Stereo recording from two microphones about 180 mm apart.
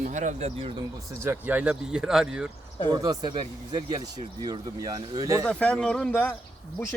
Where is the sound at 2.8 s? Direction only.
25° right (ahead or behind).